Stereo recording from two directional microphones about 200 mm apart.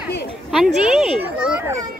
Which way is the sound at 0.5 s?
Centre (ahead or behind).